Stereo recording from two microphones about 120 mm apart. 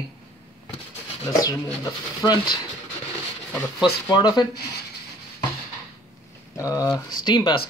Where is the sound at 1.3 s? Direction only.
30° left (ahead or behind).